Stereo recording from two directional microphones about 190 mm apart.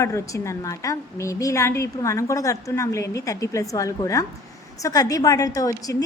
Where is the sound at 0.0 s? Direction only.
15° left (ahead or behind).